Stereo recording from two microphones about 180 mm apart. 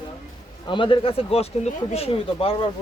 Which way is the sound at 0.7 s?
30° left (ahead or behind).